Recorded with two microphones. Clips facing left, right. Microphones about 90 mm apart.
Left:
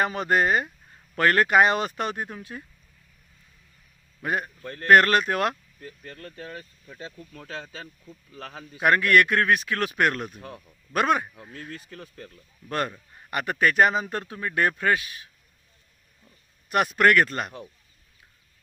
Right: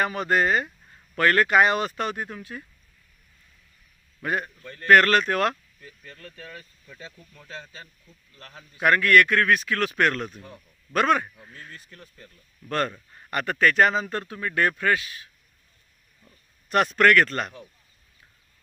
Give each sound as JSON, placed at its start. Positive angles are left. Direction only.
{"t": 0.0, "sound": "speech", "side_deg": 25}
{"t": 4.2, "sound": "speech", "side_deg": 20}
{"t": 4.6, "sound": "speech", "side_deg": 60}
{"t": 4.9, "sound": "speech", "side_deg": 20}
{"t": 5.8, "sound": "speech", "side_deg": 45}
{"t": 6.3, "sound": "speech", "side_deg": 30}
{"t": 7.3, "sound": "speech", "side_deg": 85}
{"t": 8.8, "sound": "speech", "side_deg": 20}
{"t": 11.7, "sound": "speech", "side_deg": 75}
{"t": 12.6, "sound": "speech", "side_deg": 15}
{"t": 16.6, "sound": "speech", "side_deg": 10}